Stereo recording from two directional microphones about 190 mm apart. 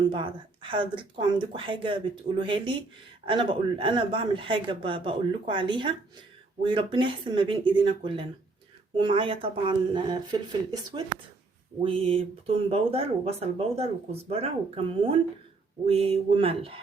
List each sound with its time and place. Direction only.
0.0 s speech: 25° right (ahead or behind)